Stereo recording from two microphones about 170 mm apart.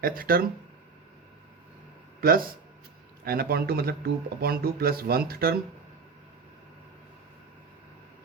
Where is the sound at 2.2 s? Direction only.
60° right (ahead or behind).